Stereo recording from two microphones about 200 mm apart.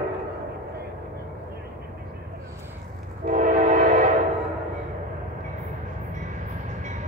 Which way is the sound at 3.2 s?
40° right (ahead or behind).